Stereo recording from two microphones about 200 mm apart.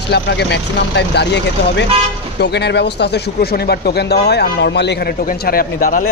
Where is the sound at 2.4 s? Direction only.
55° left (ahead or behind).